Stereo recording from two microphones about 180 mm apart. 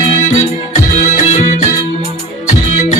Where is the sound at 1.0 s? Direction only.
45° left (ahead or behind).